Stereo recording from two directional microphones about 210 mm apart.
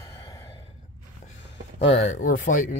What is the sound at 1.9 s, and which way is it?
Speech, 35° left (ahead or behind).